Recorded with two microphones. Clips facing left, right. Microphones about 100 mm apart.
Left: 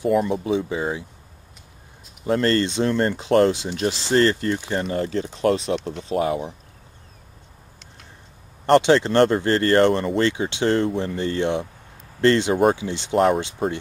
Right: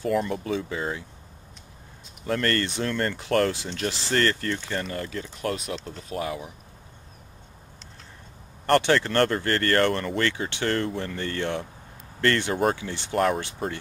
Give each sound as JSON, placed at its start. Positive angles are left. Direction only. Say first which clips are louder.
{"t": 0.1, "sound": "speech", "louder": "left 5 dB", "side_deg": 5}
{"t": 0.4, "sound": "speech", "louder": "left 5 dB", "side_deg": 20}
{"t": 2.2, "sound": "speech", "louder": "left 6 dB", "side_deg": 20}
{"t": 4.8, "sound": "speech", "louder": "left 8 dB", "side_deg": 30}
{"t": 8.6, "sound": "speech", "louder": "left 5 dB", "side_deg": 20}